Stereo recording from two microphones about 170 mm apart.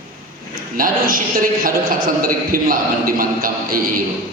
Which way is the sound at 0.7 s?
55° right (ahead or behind).